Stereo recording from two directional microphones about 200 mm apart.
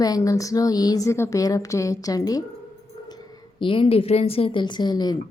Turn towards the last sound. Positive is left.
turn(degrees=20)  # may be behind; listen again after turning